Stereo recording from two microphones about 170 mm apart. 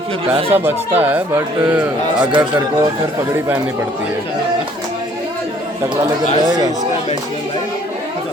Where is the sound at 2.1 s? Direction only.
25° right (ahead or behind).